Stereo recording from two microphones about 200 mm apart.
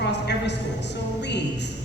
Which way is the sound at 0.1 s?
60° left (ahead or behind).